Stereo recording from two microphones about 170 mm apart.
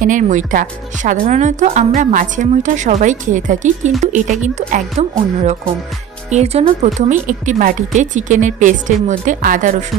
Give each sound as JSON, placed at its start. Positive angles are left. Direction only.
{"t": 0.0, "sound": "speech", "side_deg": -50}